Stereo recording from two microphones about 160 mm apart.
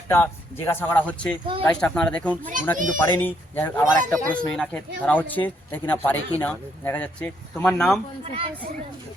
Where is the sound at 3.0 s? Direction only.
10° left (ahead or behind).